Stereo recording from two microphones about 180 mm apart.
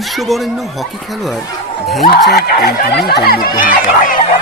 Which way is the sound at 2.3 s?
65° left (ahead or behind).